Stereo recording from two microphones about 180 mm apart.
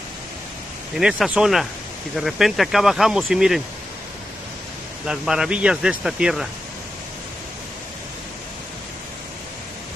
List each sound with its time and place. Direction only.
1.1 s speech: centre (ahead or behind)
5.0 s speech: 5° right (ahead or behind)